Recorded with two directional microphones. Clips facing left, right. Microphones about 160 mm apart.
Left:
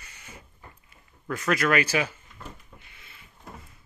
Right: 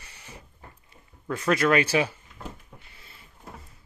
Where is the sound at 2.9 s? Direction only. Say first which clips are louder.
Right 1 dB; 35° right (ahead or behind).